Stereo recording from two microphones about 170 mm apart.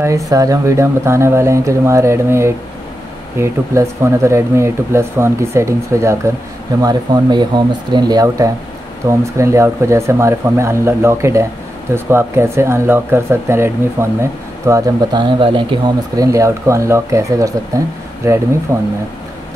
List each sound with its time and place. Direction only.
0.3 s speech: 20° right (ahead or behind)
16.2 s speech: 20° right (ahead or behind)